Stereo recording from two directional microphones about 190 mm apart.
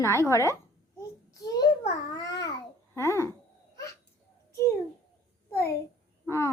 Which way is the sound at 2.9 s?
15° left (ahead or behind).